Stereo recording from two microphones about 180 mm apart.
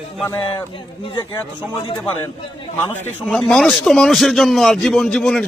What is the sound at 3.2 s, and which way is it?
A man's voice, 5° left (ahead or behind).